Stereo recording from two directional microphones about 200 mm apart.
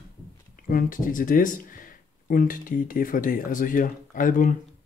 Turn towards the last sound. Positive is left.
turn(degrees=40)  # may be behind; listen again after turning